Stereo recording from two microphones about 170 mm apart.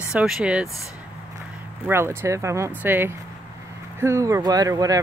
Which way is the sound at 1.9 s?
15° right (ahead or behind).